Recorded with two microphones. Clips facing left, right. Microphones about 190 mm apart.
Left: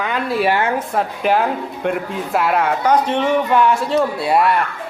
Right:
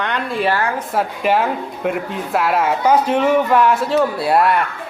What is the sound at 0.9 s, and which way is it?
Speech, centre (ahead or behind).